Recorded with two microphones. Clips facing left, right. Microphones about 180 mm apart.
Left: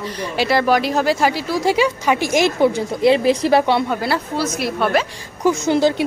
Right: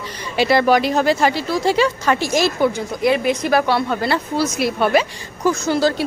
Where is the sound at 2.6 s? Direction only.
25° left (ahead or behind).